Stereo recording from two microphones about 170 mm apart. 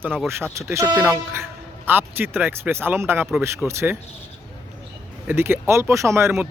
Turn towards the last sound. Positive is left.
turn(degrees=-15)  # may be behind; listen again after turning